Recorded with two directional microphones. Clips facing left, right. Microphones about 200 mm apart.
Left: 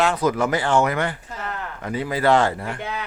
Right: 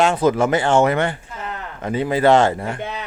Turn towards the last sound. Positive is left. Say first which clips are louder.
# right 2 dB
turn(degrees=-20)  # may be behind; listen again after turning